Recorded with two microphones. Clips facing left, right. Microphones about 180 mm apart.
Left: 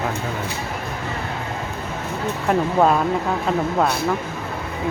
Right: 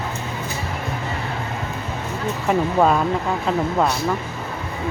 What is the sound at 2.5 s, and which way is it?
Speech, centre (ahead or behind).